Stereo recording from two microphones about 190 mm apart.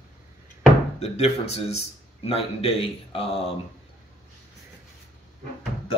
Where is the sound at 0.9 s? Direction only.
35° left (ahead or behind).